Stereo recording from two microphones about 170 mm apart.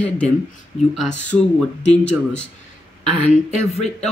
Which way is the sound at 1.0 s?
45° left (ahead or behind).